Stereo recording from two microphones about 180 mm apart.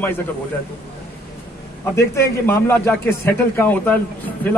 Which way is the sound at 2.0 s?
15° left (ahead or behind).